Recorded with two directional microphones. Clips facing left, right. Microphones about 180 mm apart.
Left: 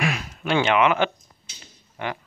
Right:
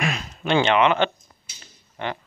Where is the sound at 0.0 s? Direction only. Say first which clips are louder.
Left 1 dB; 10° left (ahead or behind).